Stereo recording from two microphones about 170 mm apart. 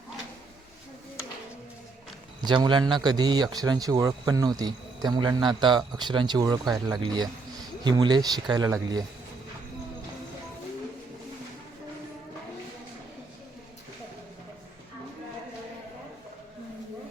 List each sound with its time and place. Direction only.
2.4 s speech: 25° right (ahead or behind)